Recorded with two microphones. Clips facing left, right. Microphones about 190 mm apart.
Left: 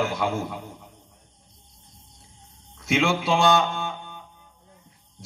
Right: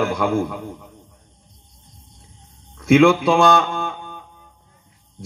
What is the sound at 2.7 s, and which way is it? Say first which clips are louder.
Speech: right 10 dB; 55° right (ahead or behind).